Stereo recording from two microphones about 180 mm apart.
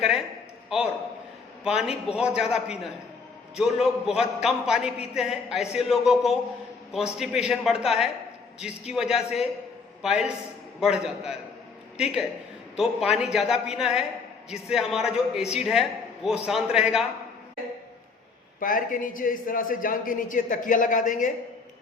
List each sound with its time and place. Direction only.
1.6 s a man's voice: 5° right (ahead or behind)
18.6 s speech: 50° left (ahead or behind)